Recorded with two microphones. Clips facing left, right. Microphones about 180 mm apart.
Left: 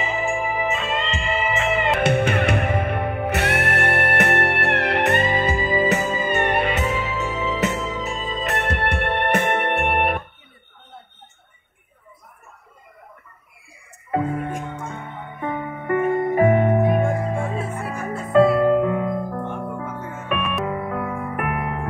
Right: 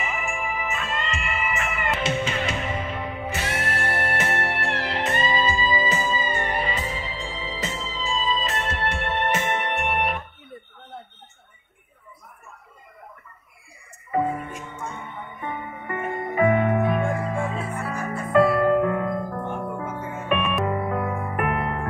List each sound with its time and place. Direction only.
0.0 s music: 30° left (ahead or behind)
2.0 s music: 60° left (ahead or behind)
14.1 s music: 65° left (ahead or behind)
16.3 s music: 40° left (ahead or behind)
16.6 s music: 30° left (ahead or behind)
17.0 s music: 40° left (ahead or behind)
17.3 s music: 25° left (ahead or behind)
19.3 s music: centre (ahead or behind)